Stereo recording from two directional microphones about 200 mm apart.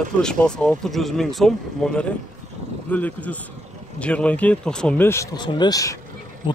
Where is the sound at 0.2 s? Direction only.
5° left (ahead or behind).